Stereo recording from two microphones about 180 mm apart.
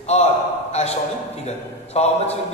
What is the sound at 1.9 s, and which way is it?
Speech, 40° left (ahead or behind).